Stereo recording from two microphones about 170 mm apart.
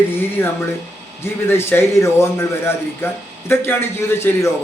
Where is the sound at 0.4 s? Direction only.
15° left (ahead or behind).